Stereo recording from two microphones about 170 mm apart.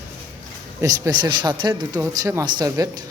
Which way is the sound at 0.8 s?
20° right (ahead or behind).